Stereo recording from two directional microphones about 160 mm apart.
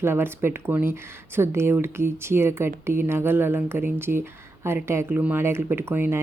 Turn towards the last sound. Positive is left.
turn(degrees=-15)  # may be behind; listen again after turning